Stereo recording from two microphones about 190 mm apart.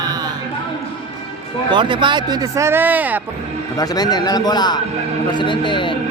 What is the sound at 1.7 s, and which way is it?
Speech, 25° right (ahead or behind).